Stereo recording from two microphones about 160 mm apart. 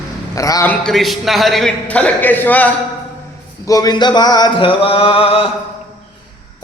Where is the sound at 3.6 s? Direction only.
20° left (ahead or behind).